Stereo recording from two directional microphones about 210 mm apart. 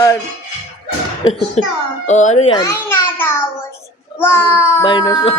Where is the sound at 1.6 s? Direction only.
30° left (ahead or behind).